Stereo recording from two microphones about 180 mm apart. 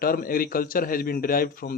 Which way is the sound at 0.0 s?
55° left (ahead or behind).